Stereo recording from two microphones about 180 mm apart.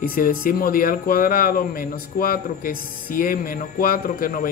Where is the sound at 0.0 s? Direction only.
50° left (ahead or behind).